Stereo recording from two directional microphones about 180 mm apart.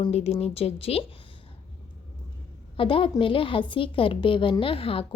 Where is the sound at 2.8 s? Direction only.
30° left (ahead or behind).